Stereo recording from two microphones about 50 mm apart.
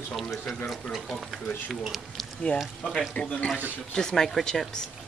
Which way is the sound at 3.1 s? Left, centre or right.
Left.